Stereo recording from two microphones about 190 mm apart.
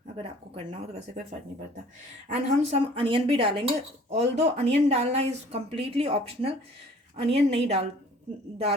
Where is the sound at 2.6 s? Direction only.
30° right (ahead or behind).